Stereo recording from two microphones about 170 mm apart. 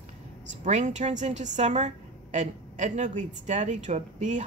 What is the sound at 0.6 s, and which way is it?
A woman's voice, 45° right (ahead or behind).